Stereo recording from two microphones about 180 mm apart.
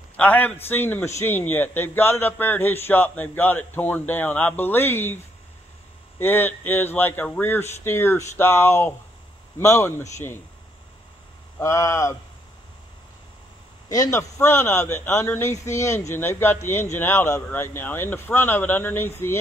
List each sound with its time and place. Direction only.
0.2 s a man's voice: 10° left (ahead or behind)
11.6 s a man's voice: 15° left (ahead or behind)
13.8 s a man's voice: 20° left (ahead or behind)